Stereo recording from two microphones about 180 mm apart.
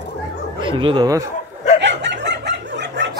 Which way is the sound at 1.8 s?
75° right (ahead or behind).